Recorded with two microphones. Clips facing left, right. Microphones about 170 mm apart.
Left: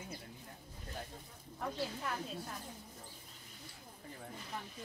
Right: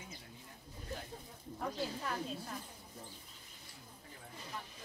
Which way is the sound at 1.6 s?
Centre (ahead or behind).